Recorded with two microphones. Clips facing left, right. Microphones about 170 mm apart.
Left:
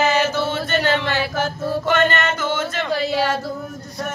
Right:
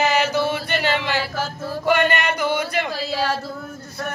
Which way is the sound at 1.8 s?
15° right (ahead or behind).